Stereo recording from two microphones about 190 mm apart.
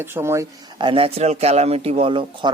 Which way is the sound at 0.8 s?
25° right (ahead or behind).